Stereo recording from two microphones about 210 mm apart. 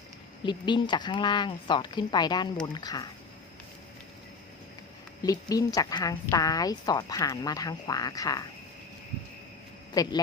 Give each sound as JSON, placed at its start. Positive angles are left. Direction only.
{"t": 0.4, "sound": "speech", "side_deg": 20}
{"t": 5.2, "sound": "a woman's voice", "side_deg": 15}
{"t": 9.9, "sound": "a man's voice", "side_deg": 15}